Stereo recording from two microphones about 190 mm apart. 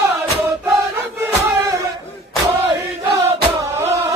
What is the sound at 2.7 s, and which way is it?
Chant, 25° right (ahead or behind).